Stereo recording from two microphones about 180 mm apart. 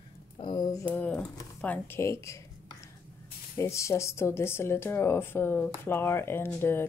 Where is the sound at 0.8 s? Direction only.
10° left (ahead or behind).